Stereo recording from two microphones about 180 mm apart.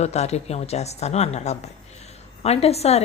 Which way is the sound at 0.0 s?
40° left (ahead or behind).